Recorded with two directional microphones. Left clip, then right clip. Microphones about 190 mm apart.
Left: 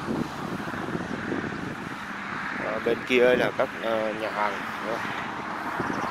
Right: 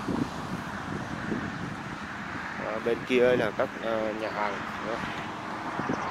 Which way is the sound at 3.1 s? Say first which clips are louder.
Left 3 dB; centre (ahead or behind).